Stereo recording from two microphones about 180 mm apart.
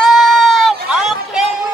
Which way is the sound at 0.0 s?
Centre (ahead or behind).